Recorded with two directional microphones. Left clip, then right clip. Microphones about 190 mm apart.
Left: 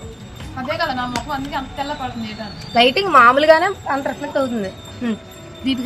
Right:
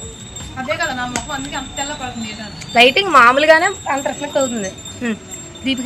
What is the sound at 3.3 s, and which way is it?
Speech, 10° left (ahead or behind).